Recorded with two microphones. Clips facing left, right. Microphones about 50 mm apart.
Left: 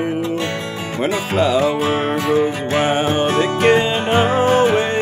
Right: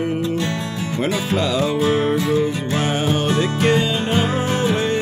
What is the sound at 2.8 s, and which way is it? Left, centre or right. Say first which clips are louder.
Music: left 3 dB; left.